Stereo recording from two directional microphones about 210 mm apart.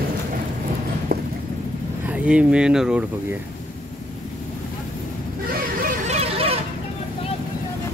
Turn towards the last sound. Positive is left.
turn(degrees=-30)  # may be behind; listen again after turning